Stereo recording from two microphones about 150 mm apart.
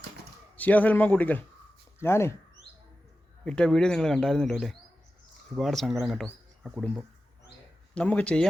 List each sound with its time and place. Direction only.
0.5 s a man's voice: 10° left (ahead or behind)
3.4 s speech: 5° left (ahead or behind)
7.9 s a man's voice: 10° left (ahead or behind)